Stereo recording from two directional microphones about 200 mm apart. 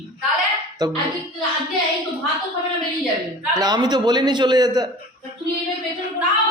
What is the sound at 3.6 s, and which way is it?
A man's voice, 20° right (ahead or behind).